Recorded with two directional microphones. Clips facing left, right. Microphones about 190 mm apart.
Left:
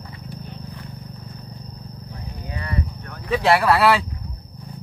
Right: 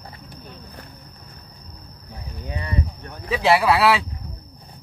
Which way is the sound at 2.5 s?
20° right (ahead or behind).